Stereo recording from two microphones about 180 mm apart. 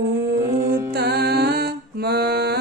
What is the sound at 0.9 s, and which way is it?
Music, 65° right (ahead or behind).